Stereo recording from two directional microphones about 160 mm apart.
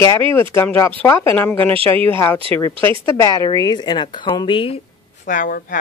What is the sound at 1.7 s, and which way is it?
Speech, 35° right (ahead or behind).